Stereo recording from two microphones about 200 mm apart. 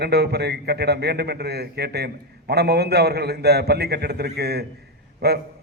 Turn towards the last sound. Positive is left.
turn(degrees=-55)  # may be behind; listen again after turning